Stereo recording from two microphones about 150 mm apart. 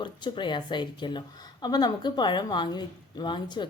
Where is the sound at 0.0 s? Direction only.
30° left (ahead or behind).